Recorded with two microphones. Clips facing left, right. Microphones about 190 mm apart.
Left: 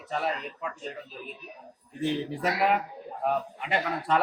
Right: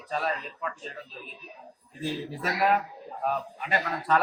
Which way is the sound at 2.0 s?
20° left (ahead or behind).